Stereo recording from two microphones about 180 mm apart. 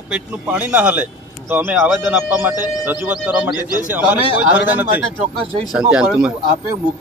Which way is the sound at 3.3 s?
20° left (ahead or behind).